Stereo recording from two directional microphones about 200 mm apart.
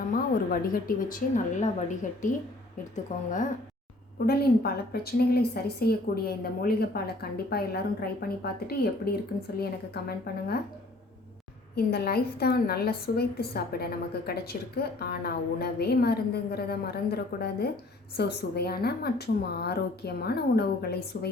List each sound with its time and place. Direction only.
0.1 s a woman's voice: 45° left (ahead or behind)
2.9 s speech: 40° left (ahead or behind)
4.3 s a woman's voice: 50° left (ahead or behind)
11.7 s a woman's voice: 50° left (ahead or behind)